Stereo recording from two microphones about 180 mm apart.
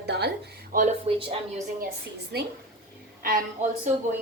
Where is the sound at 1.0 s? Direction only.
30° right (ahead or behind).